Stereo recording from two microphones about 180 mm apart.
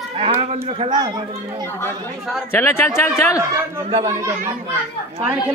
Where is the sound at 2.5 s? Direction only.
15° left (ahead or behind).